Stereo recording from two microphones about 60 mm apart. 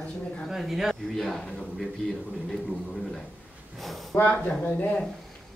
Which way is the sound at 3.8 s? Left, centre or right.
Centre.